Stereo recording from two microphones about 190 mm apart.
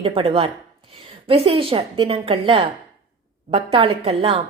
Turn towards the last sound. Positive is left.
turn(degrees=-30)  # may be behind; listen again after turning